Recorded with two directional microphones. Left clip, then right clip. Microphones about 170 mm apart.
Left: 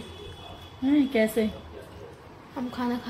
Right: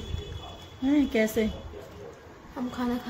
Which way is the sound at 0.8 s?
40° right (ahead or behind).